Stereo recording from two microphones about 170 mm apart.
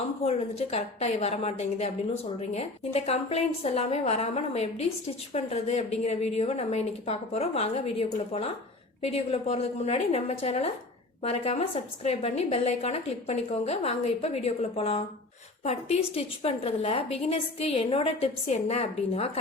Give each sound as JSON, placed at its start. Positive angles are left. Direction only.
{"t": 0.3, "sound": "a woman's voice", "side_deg": 40}